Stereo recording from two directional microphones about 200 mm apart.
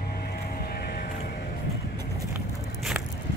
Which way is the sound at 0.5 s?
50° left (ahead or behind).